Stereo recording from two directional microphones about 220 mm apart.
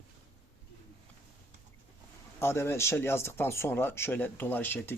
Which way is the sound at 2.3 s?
10° left (ahead or behind).